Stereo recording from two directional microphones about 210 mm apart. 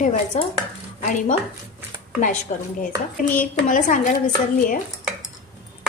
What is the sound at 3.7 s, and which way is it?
Speech, 40° left (ahead or behind).